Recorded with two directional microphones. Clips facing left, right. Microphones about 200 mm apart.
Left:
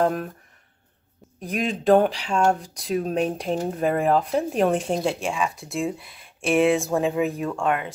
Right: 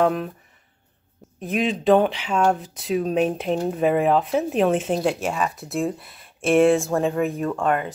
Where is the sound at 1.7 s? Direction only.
Centre (ahead or behind).